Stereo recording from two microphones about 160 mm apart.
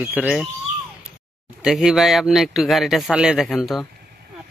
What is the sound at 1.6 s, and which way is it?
A man's voice, 5° right (ahead or behind).